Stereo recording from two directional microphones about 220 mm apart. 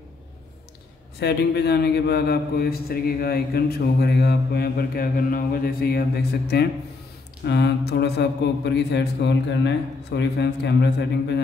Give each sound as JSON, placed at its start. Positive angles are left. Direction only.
{"t": 1.2, "sound": "a man's voice", "side_deg": 50}